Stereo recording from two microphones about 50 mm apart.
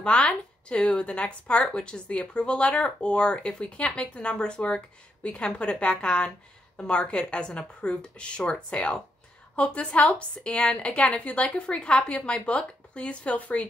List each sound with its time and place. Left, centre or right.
0.0 s speech: left